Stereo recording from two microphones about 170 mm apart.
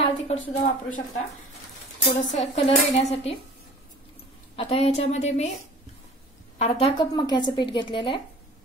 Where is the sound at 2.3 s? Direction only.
35° left (ahead or behind).